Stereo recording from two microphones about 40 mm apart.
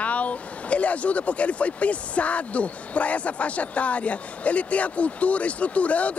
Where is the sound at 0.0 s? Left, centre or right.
Left.